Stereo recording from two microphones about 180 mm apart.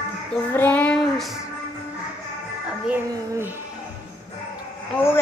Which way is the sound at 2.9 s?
10° right (ahead or behind).